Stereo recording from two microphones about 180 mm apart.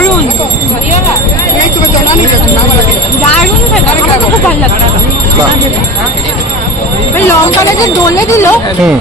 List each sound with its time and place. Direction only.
8.0 s speech: 15° left (ahead or behind)